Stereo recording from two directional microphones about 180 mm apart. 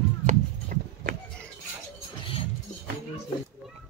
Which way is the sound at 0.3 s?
50° right (ahead or behind).